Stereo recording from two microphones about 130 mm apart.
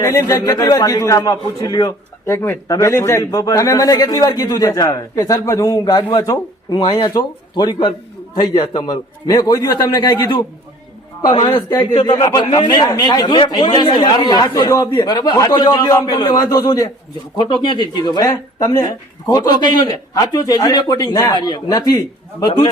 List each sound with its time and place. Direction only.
0.0 s a man's voice: 25° left (ahead or behind)
2.2 s a man's voice: 20° left (ahead or behind); by 10.4 s 35° left (ahead or behind)
11.4 s a man's voice: 35° left (ahead or behind)
12.5 s speech: 40° left (ahead or behind)
12.7 s a man's voice: 30° left (ahead or behind)